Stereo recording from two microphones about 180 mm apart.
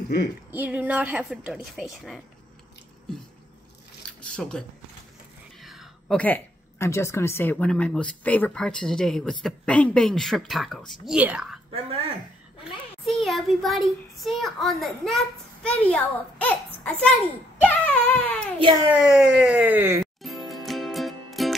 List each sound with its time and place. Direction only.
0.1 s speech: 60° left (ahead or behind)
0.5 s a woman's voice: 10° right (ahead or behind)
4.2 s speech: 5° left (ahead or behind)
13.0 s speech: centre (ahead or behind)
17.6 s a sound: 5° left (ahead or behind)
18.6 s a child's voice: 25° right (ahead or behind)
18.9 s a woman's voice: 5° right (ahead or behind)
20.0 s music: centre (ahead or behind)